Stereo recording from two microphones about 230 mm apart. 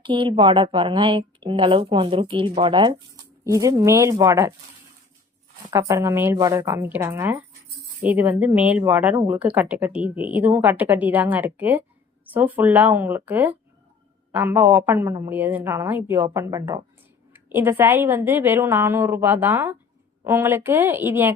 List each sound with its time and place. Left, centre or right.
0.0 s speech: right
5.7 s speech: centre